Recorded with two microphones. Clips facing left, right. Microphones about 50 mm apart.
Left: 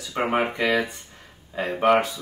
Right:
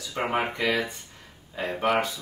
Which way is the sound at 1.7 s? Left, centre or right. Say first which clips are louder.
Left 5 dB; centre.